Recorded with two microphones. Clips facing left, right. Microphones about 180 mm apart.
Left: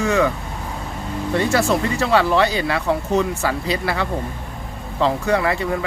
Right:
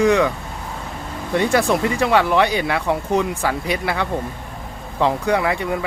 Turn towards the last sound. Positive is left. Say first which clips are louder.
# even
turn(degrees=-15)  # may be behind; listen again after turning